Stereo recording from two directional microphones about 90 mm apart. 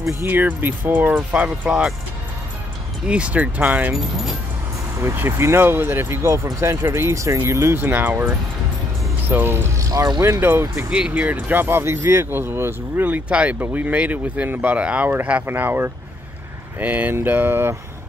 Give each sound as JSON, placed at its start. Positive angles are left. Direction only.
{"t": 0.2, "sound": "speech", "side_deg": -20}
{"t": 3.1, "sound": "speech", "side_deg": -15}
{"t": 3.9, "sound": "speech", "side_deg": -5}
{"t": 5.0, "sound": "speech", "side_deg": -30}
{"t": 9.8, "sound": "a sound", "side_deg": -40}
{"t": 10.2, "sound": "speech", "side_deg": -25}
{"t": 10.9, "sound": "speech", "side_deg": -15}